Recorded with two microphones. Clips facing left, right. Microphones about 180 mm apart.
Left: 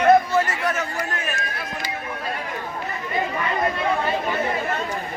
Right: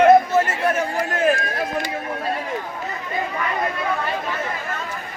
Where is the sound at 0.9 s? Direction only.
45° right (ahead or behind).